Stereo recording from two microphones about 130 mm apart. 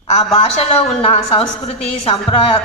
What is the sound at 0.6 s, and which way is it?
Speech, 55° left (ahead or behind).